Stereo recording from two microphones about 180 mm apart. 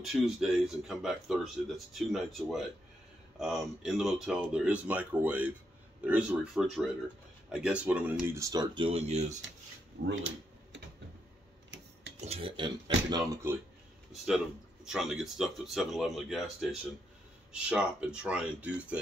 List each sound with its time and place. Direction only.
0.0 s speech: 5° right (ahead or behind); by 9.4 s 35° right (ahead or behind)
10.0 s a sound: 85° right
12.3 s speech: 30° right (ahead or behind)
14.9 s speech: 5° right (ahead or behind)